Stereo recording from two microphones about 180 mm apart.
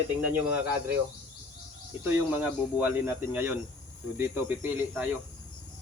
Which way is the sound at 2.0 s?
10° right (ahead or behind).